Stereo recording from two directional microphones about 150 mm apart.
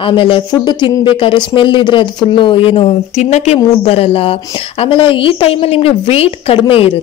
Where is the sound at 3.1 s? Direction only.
50° left (ahead or behind).